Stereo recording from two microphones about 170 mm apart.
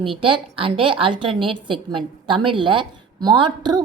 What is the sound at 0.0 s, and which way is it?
A woman's voice, 30° right (ahead or behind).